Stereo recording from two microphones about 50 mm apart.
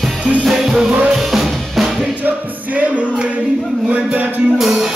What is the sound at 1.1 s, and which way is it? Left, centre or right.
Drum kit, centre.